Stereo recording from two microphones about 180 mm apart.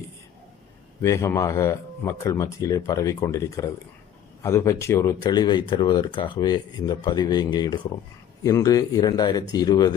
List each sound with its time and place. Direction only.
1.0 s speech: 15° left (ahead or behind)